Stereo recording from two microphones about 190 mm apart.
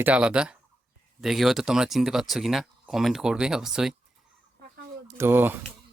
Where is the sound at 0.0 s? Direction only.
5° right (ahead or behind).